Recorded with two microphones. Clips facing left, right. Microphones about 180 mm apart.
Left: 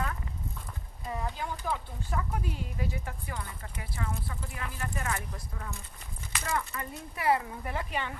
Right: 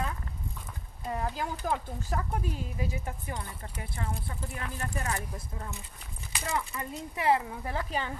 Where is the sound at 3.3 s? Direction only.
30° right (ahead or behind).